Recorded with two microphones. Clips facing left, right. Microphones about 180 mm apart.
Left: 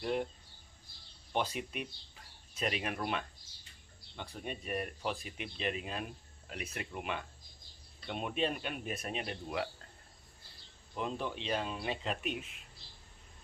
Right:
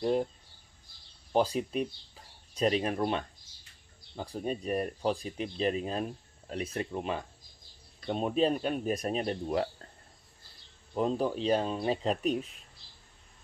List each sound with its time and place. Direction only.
0.0 s speech: 35° right (ahead or behind)
1.3 s speech: 35° right (ahead or behind)
11.0 s speech: 40° right (ahead or behind)